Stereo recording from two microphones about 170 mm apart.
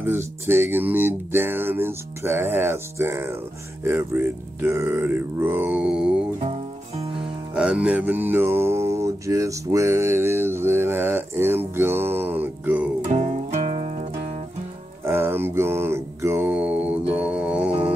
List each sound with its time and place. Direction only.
0.0 s music: 15° right (ahead or behind)
7.0 s music: 35° right (ahead or behind)
7.5 s music: 5° right (ahead or behind)
13.1 s music: 45° right (ahead or behind)
15.0 s mantra: 15° right (ahead or behind)
17.2 s music: 5° right (ahead or behind)